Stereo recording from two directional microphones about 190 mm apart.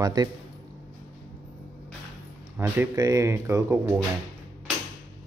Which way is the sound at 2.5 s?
10° right (ahead or behind).